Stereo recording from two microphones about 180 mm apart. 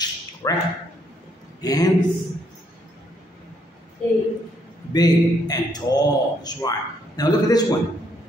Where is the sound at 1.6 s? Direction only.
20° left (ahead or behind).